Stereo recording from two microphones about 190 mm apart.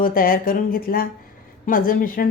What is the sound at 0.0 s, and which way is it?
A woman's voice, 50° left (ahead or behind).